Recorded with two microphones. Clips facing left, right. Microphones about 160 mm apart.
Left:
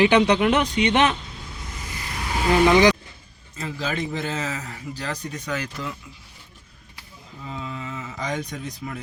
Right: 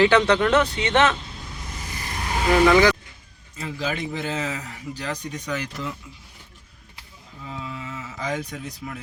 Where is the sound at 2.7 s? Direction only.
20° left (ahead or behind).